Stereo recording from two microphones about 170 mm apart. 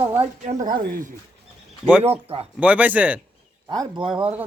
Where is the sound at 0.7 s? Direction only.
60° right (ahead or behind).